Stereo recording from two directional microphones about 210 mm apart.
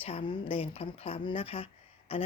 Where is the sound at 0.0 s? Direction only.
25° left (ahead or behind).